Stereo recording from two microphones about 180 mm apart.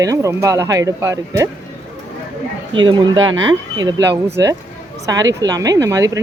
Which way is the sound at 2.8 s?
25° right (ahead or behind).